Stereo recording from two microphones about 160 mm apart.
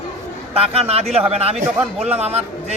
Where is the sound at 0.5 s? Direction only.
40° right (ahead or behind).